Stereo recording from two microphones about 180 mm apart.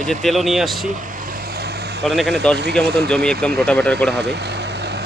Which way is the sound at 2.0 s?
Centre (ahead or behind).